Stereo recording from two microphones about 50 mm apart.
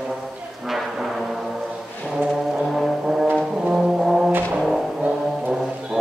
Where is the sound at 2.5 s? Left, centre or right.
Centre.